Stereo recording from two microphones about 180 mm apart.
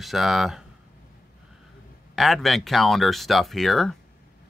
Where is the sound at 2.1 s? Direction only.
Centre (ahead or behind).